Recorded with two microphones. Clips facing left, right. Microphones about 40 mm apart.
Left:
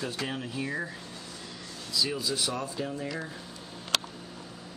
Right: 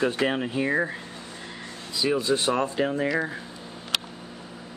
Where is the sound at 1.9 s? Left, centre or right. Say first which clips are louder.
Right 7 dB; right.